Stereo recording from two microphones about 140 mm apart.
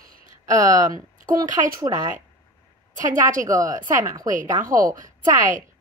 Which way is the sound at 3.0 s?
70° right (ahead or behind).